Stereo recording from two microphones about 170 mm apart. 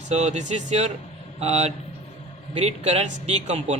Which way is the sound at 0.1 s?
40° right (ahead or behind).